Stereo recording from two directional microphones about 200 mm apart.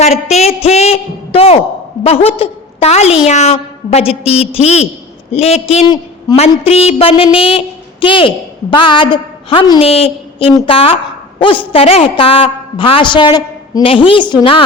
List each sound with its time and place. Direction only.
0.0 s a woman's voice: 35° left (ahead or behind)
6.3 s a woman's voice: 20° left (ahead or behind)
6.7 s a woman's voice: 30° left (ahead or behind)